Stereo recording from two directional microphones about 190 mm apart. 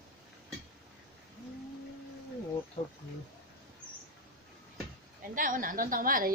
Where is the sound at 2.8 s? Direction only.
30° left (ahead or behind).